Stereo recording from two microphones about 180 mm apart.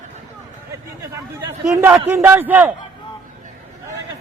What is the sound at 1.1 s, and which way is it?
A man's voice, 15° right (ahead or behind).